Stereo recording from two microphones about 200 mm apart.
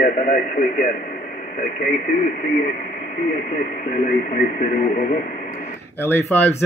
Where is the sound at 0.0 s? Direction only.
40° left (ahead or behind).